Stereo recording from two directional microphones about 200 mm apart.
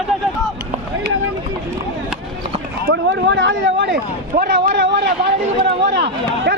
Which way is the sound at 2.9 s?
65° right (ahead or behind).